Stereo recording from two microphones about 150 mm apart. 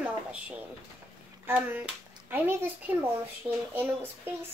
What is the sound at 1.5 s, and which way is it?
A woman's voice, 10° right (ahead or behind).